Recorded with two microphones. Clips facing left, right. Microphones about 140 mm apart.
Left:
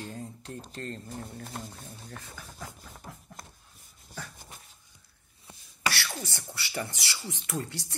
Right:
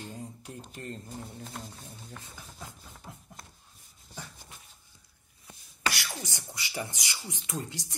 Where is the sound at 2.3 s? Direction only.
20° right (ahead or behind).